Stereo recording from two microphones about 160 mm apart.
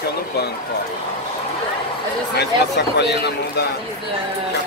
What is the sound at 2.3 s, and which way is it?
Speech, 90° left.